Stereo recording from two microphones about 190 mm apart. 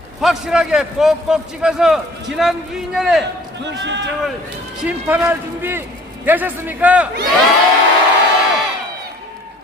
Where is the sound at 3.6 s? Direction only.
65° right (ahead or behind).